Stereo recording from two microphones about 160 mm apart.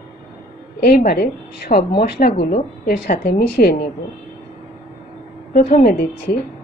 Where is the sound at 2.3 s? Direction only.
50° left (ahead or behind).